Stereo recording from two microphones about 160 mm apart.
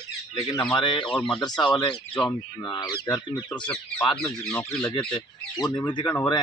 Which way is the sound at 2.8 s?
15° left (ahead or behind).